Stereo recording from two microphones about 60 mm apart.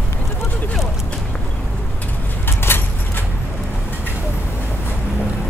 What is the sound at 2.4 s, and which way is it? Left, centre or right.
Vehicle, left.